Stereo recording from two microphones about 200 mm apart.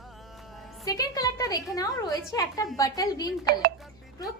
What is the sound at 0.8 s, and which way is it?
A woman's voice, 20° left (ahead or behind).